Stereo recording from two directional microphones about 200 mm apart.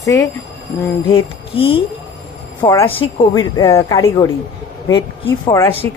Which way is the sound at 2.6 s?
10° left (ahead or behind).